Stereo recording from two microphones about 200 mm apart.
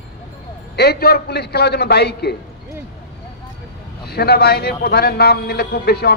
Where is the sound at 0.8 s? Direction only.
55° left (ahead or behind).